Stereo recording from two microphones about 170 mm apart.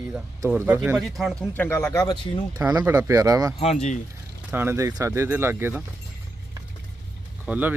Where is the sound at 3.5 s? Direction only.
40° left (ahead or behind).